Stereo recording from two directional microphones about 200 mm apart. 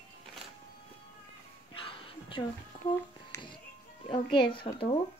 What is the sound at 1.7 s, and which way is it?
Music, 25° left (ahead or behind).